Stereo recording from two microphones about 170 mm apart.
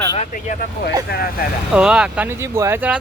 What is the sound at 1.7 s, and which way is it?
Speech, 5° right (ahead or behind).